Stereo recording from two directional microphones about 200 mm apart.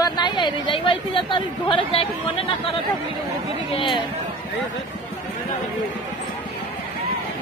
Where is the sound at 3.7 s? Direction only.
25° left (ahead or behind).